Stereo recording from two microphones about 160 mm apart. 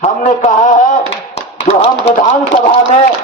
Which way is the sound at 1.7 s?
40° left (ahead or behind).